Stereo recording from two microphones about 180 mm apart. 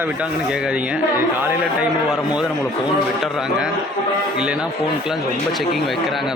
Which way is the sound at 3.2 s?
5° right (ahead or behind).